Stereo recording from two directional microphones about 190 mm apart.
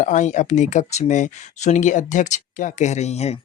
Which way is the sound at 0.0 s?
40° left (ahead or behind).